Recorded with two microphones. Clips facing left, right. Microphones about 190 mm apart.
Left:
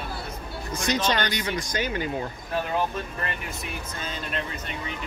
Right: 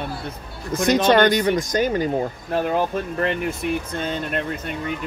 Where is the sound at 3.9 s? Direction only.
60° right (ahead or behind).